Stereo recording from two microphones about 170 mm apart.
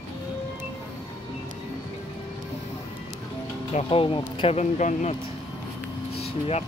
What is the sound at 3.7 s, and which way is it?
Speech, 35° left (ahead or behind).